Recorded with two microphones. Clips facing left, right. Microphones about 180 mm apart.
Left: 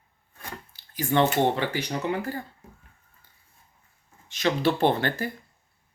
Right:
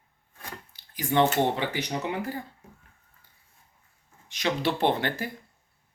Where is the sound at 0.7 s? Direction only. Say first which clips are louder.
Left 2 dB; 15° right (ahead or behind).